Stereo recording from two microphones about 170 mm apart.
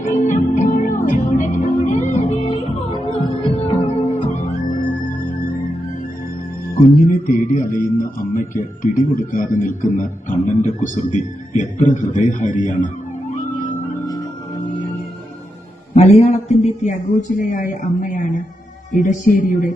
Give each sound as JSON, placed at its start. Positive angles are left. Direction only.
{"t": 0.0, "sound": "music", "side_deg": 50}
{"t": 6.7, "sound": "a man's voice", "side_deg": 55}
{"t": 16.0, "sound": "a man's voice", "side_deg": 40}